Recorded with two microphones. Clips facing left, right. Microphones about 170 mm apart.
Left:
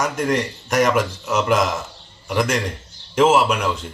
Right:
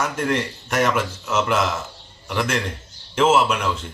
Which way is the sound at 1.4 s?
40° left (ahead or behind).